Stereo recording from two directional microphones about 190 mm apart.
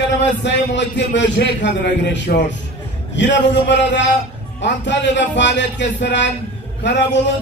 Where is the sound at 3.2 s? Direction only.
70° left (ahead or behind).